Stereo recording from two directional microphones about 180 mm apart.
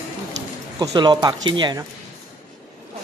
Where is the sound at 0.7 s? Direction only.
25° right (ahead or behind).